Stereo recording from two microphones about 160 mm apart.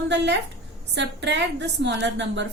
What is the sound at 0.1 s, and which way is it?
A woman's voice, 90° right.